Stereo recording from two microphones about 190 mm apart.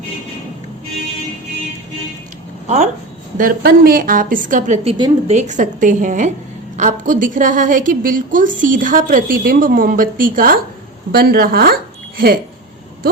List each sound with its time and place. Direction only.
2.6 s speech: 35° right (ahead or behind)
3.3 s a woman's voice: 50° right (ahead or behind)